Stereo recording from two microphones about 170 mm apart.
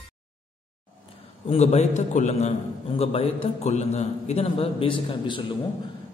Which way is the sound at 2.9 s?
35° left (ahead or behind).